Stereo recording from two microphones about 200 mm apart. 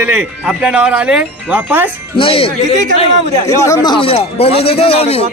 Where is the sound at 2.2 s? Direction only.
25° left (ahead or behind).